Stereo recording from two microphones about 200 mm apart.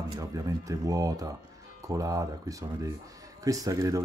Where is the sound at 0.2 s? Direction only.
20° right (ahead or behind).